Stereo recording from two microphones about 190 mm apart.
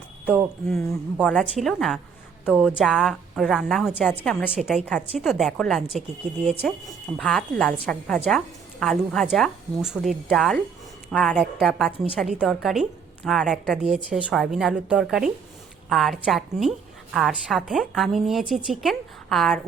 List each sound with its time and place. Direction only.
0.3 s a woman's voice: 5° right (ahead or behind)